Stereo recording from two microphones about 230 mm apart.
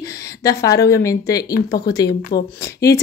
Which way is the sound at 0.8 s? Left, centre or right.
Centre.